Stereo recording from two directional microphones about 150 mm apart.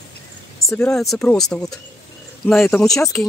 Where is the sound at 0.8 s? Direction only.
5° left (ahead or behind).